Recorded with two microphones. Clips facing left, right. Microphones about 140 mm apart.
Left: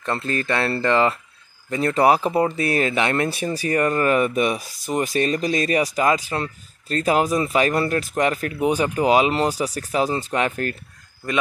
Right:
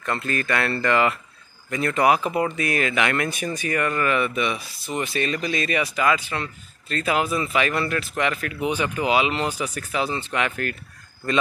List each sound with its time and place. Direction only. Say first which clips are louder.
0.0 s speech: left 2 dB; 30° left (ahead or behind)